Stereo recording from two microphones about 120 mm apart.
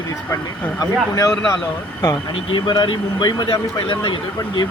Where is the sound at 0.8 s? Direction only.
30° left (ahead or behind).